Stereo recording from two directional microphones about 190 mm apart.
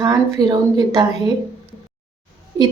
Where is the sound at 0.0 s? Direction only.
20° right (ahead or behind).